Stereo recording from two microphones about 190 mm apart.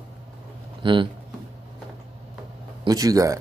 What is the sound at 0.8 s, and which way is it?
Speech, 25° right (ahead or behind).